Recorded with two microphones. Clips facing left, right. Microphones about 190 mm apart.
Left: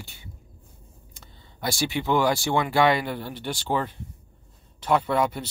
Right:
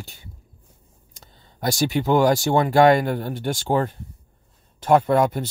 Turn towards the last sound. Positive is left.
turn(degrees=-45)  # may be behind; listen again after turning